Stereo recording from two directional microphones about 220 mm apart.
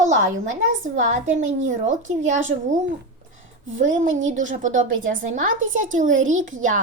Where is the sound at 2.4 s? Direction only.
60° right (ahead or behind).